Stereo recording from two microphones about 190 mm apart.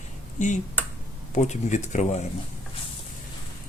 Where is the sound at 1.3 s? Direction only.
40° left (ahead or behind).